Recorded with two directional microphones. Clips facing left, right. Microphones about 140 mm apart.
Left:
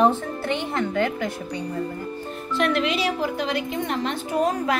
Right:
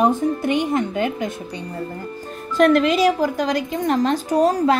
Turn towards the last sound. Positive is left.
turn(degrees=-35)  # may be behind; listen again after turning